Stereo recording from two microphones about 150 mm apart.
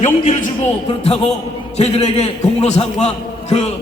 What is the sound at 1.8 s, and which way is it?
A man's voice, 45° left (ahead or behind).